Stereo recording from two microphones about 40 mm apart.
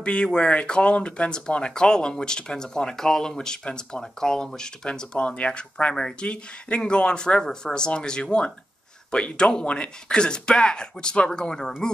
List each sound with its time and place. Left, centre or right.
0.0 s speech: left